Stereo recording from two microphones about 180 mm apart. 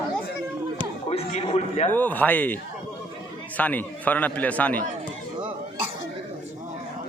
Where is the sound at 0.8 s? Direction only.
35° left (ahead or behind).